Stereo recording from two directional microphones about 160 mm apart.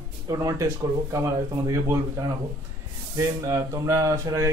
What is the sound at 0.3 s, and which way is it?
Speech, 20° right (ahead or behind).